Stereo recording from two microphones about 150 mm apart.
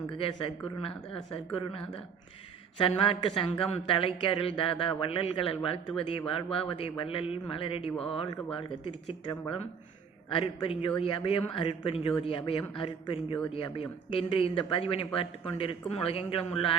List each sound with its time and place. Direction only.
0.1 s a woman's voice: 35° left (ahead or behind)
2.7 s speech: 35° left (ahead or behind)